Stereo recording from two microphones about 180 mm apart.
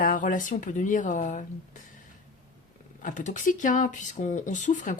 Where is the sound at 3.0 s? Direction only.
45° left (ahead or behind).